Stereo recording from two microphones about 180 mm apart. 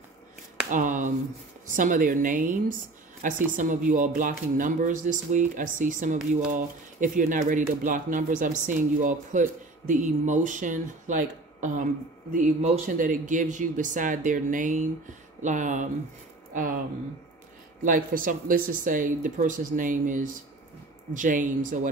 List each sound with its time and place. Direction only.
0.7 s a man's voice: 45° right (ahead or behind)
17.8 s speech: 50° right (ahead or behind)